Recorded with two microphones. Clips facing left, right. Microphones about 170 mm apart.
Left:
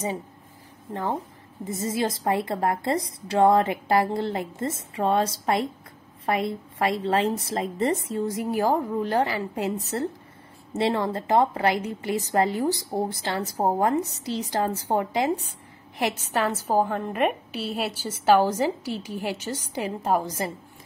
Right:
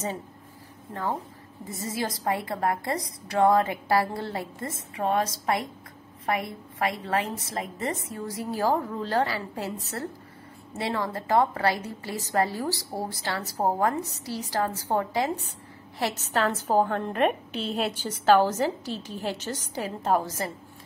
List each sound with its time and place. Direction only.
1.7 s a woman's voice: 20° left (ahead or behind)